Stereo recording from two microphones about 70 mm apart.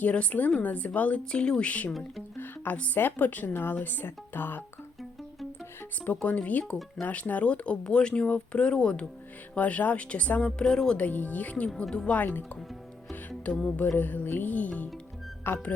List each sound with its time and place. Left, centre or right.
0.0 s speech: centre
1.9 s speech: centre
2.4 s speech: left
6.2 s speech: left
10.6 s speech: centre
11.0 s speech: left
12.2 s speech: left
13.5 s speech: centre
13.9 s speech: left